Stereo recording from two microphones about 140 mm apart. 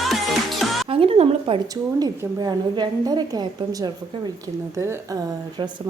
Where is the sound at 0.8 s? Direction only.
40° right (ahead or behind).